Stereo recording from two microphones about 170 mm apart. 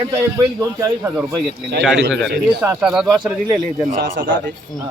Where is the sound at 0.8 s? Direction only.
15° right (ahead or behind).